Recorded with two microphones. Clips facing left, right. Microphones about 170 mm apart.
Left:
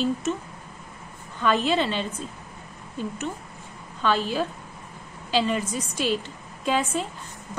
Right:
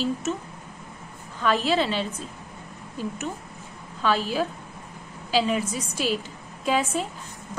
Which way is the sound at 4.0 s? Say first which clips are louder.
Even; 5° right (ahead or behind).